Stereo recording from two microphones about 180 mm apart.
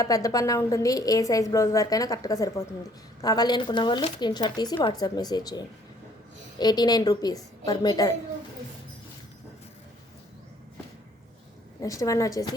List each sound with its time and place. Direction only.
0.0 s a woman's voice: 20° left (ahead or behind)
11.8 s a woman's voice: 20° left (ahead or behind)